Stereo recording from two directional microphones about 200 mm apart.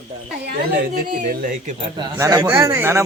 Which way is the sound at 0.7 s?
45° right (ahead or behind).